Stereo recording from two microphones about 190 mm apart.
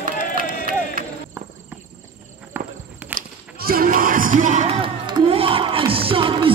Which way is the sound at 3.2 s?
50° right (ahead or behind).